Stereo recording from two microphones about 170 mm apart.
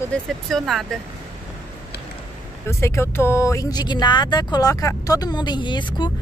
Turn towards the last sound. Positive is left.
turn(degrees=25)  # may be behind; listen again after turning